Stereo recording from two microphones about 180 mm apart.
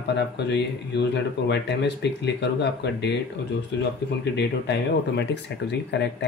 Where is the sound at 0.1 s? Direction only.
70° left (ahead or behind).